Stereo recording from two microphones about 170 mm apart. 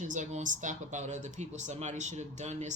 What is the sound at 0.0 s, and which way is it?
Speech, 45° right (ahead or behind).